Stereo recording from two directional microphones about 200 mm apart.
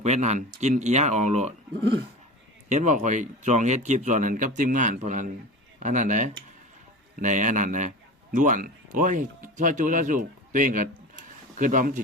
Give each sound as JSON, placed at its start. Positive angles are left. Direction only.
{"t": 0.0, "sound": "a man's voice", "side_deg": -35}
{"t": 2.6, "sound": "a man's voice", "side_deg": -35}